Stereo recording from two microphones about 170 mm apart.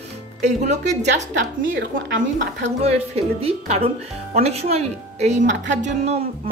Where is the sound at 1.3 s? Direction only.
90° right.